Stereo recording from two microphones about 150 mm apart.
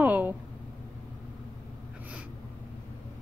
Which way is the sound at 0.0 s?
10° right (ahead or behind).